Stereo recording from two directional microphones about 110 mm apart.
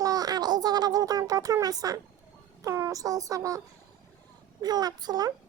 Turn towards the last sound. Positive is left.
turn(degrees=-35)  # may be behind; listen again after turning